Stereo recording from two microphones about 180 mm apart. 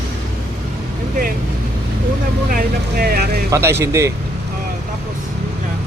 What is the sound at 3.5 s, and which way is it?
Speech, 15° right (ahead or behind).